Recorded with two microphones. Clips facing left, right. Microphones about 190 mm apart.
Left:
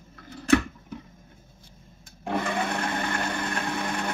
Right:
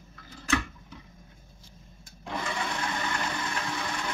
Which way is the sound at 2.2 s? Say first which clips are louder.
Left 6 dB; 60° left (ahead or behind).